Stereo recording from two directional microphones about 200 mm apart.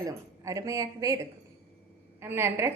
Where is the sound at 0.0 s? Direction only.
15° right (ahead or behind).